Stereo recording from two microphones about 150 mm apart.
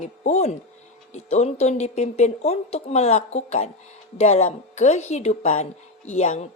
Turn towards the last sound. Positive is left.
turn(degrees=50)  # may be behind; listen again after turning